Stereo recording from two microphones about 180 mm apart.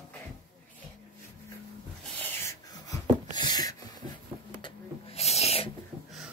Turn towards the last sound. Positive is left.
turn(degrees=35)  # may be behind; listen again after turning